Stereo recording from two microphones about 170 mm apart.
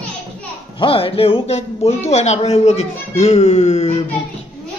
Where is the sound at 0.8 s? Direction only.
35° left (ahead or behind).